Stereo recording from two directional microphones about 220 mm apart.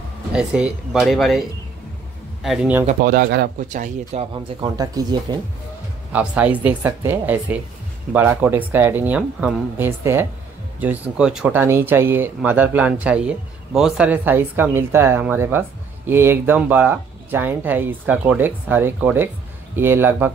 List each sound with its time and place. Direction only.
0.3 s speech: 5° right (ahead or behind)
2.4 s speech: centre (ahead or behind)
2.9 s speech: 40° right (ahead or behind); by 5.0 s 15° right (ahead or behind)
6.1 s speech: 5° right (ahead or behind)